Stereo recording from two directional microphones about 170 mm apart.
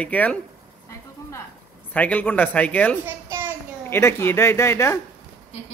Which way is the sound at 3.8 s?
15° left (ahead or behind).